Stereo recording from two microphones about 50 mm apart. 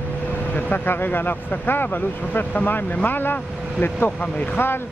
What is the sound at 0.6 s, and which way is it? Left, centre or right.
Speech, left.